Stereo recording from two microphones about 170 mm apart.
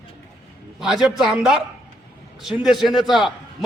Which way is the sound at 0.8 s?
Centre (ahead or behind).